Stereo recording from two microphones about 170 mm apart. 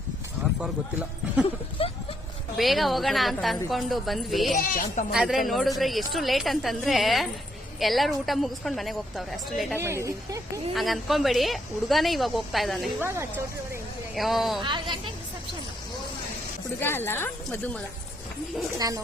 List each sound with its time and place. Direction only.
1.8 s a sound: 30° left (ahead or behind)
2.6 s a woman's voice: centre (ahead or behind)
4.5 s speech: 55° left (ahead or behind)
5.1 s a woman's voice: centre (ahead or behind)
9.7 s speech: 15° right (ahead or behind)
10.8 s a woman's voice: centre (ahead or behind)
13.0 s speech: 15° right (ahead or behind)
14.2 s a woman's voice: centre (ahead or behind)
14.6 s a woman's voice: 30° right (ahead or behind)
16.8 s speech: 15° left (ahead or behind)
18.8 s a woman's voice: 20° right (ahead or behind)